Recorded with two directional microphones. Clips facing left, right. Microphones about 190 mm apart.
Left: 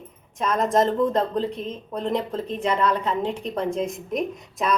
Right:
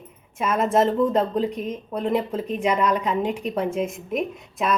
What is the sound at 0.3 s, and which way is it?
Speech, 5° right (ahead or behind).